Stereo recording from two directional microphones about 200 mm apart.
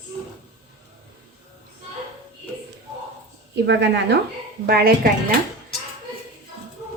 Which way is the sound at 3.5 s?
60° right (ahead or behind).